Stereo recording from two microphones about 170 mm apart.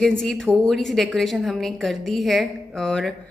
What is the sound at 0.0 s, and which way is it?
A woman's voice, 5° left (ahead or behind).